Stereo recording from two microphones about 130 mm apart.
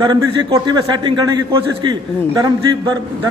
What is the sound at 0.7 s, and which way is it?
A man's voice, 35° right (ahead or behind).